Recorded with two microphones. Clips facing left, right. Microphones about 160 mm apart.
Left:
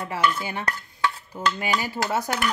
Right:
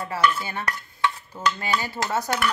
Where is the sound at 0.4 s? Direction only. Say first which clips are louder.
Left 1 dB; 15° left (ahead or behind).